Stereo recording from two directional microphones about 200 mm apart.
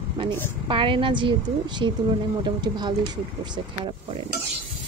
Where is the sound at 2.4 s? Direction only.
20° right (ahead or behind).